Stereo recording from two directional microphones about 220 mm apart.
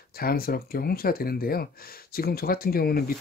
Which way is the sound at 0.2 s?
45° left (ahead or behind).